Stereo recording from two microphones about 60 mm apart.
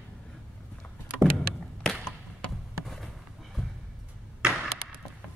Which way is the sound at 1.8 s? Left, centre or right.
Centre.